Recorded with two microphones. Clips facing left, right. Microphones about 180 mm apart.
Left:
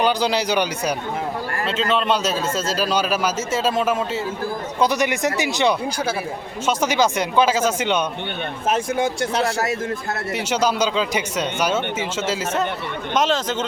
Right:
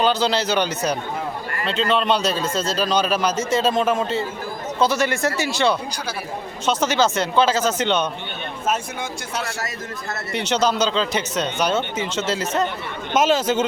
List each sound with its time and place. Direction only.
0.0 s a man's voice: 15° left (ahead or behind)
10.3 s a man's voice: 10° left (ahead or behind)
13.1 s speech: 5° right (ahead or behind)